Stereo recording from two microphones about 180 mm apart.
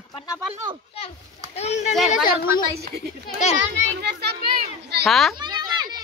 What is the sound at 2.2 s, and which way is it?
Speech, 55° left (ahead or behind).